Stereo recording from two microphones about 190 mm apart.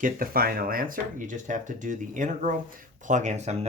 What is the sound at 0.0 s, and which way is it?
Speech, 50° right (ahead or behind).